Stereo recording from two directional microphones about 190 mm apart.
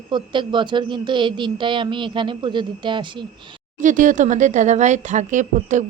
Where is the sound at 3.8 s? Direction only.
45° right (ahead or behind).